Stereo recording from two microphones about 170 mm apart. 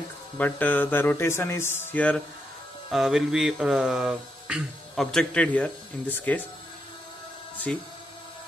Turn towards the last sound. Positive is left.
turn(degrees=5)  # may be behind; listen again after turning